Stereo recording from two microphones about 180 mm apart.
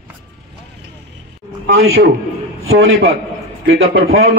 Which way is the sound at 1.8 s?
80° right.